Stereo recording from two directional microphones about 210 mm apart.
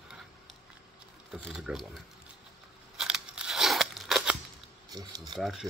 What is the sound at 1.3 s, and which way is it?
Speech, centre (ahead or behind).